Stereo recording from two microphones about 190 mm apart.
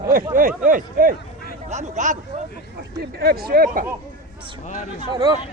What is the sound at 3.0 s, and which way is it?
Speech, 55° right (ahead or behind).